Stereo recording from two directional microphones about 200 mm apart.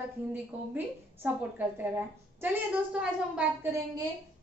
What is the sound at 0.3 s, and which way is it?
A woman's voice, 10° right (ahead or behind).